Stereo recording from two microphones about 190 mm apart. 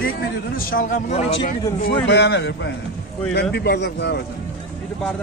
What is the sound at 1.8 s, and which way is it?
A man's voice, 60° left (ahead or behind).